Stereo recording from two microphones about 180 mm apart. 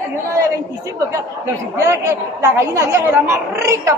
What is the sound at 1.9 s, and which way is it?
Speech, 15° right (ahead or behind).